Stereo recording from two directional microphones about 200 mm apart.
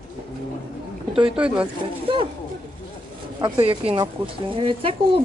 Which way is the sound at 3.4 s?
25° right (ahead or behind).